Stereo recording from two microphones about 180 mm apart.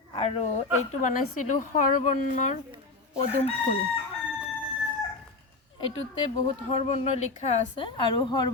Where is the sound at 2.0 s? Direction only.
40° left (ahead or behind).